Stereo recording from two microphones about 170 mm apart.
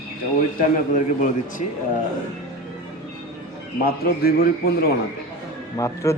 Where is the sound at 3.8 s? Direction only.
60° left (ahead or behind).